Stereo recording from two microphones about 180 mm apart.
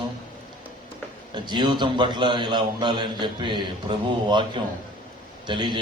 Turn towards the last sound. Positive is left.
turn(degrees=-25)  # may be behind; listen again after turning